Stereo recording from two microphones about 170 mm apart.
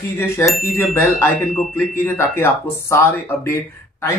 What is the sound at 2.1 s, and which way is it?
Speech, 15° left (ahead or behind).